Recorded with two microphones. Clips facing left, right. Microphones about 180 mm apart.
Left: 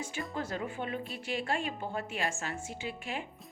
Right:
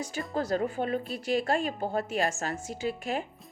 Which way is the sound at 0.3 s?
40° right (ahead or behind).